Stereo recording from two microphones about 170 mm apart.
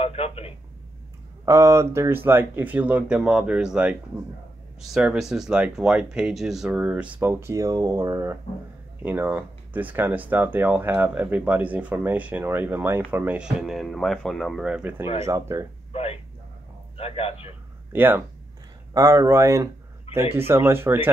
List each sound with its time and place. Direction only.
0.0 s speech: 35° left (ahead or behind)
1.4 s speech: 15° right (ahead or behind)
15.9 s a sound: 35° left (ahead or behind)
16.9 s a man's voice: 35° left (ahead or behind)
17.9 s speech: 10° right (ahead or behind)